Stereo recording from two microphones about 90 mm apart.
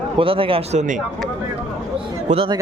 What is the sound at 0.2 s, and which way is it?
Speech, 85° right.